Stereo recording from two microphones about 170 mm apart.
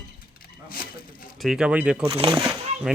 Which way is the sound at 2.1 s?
20° right (ahead or behind).